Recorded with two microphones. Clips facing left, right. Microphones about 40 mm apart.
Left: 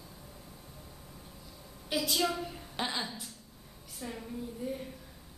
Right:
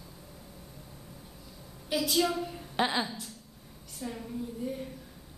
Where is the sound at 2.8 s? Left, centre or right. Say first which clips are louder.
Right 6 dB; centre.